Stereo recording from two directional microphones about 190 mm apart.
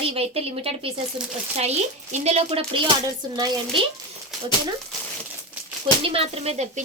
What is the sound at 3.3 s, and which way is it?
Speech, 20° right (ahead or behind).